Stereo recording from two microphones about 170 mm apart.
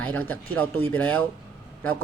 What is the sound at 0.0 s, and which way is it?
Speech, 10° left (ahead or behind).